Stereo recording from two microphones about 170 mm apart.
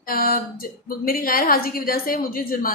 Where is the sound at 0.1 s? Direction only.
60° left (ahead or behind).